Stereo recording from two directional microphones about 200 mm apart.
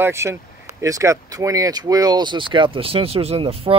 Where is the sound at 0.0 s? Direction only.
15° right (ahead or behind).